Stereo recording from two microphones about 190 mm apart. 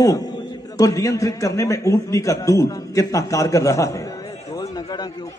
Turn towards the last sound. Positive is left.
turn(degrees=15)  # may be behind; listen again after turning